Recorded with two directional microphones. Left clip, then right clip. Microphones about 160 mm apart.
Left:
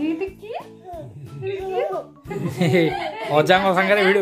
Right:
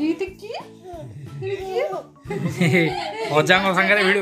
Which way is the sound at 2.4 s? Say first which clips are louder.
Left 1 dB; 15° left (ahead or behind).